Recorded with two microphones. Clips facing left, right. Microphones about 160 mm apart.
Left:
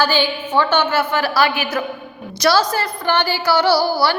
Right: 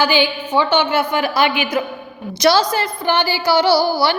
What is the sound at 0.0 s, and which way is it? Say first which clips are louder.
A woman's voice: right 1 dB; 15° right (ahead or behind).